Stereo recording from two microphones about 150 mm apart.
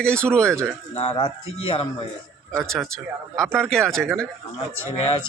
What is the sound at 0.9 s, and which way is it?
Speech, 40° left (ahead or behind).